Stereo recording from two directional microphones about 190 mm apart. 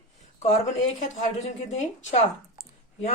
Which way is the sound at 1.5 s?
40° left (ahead or behind).